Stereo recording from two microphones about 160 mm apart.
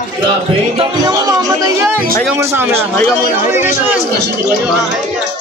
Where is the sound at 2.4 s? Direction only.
20° right (ahead or behind).